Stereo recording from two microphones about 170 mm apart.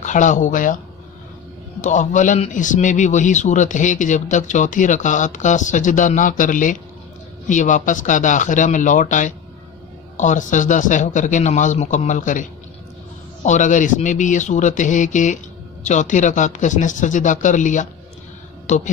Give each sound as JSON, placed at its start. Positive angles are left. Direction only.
{"t": 0.0, "sound": "speech", "side_deg": 45}
{"t": 1.8, "sound": "a man's voice", "side_deg": 45}